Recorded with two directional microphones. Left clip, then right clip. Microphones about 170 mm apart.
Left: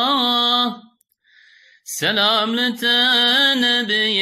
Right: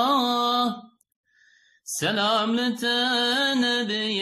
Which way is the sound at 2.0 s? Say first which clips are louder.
Left 6 dB; 20° left (ahead or behind).